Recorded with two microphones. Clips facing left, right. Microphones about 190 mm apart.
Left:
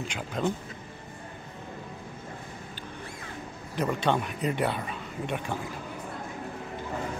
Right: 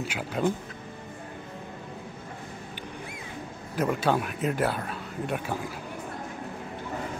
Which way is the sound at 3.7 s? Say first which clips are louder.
Right 1 dB; 5° right (ahead or behind).